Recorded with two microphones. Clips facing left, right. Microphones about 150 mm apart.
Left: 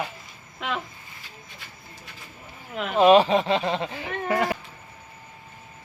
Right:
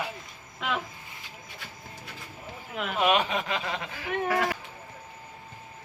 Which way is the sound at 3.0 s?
30° left (ahead or behind).